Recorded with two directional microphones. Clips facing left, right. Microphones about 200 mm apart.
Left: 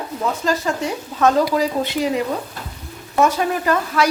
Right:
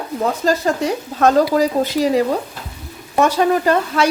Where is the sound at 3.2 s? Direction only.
30° right (ahead or behind).